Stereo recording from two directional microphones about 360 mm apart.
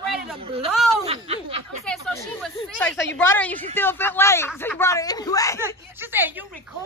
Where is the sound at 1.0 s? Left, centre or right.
Centre.